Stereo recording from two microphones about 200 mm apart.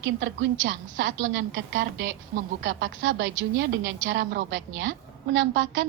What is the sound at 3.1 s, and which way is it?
A woman's voice, 65° right (ahead or behind).